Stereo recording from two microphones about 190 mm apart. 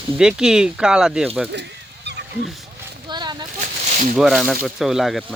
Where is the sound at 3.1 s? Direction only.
25° right (ahead or behind).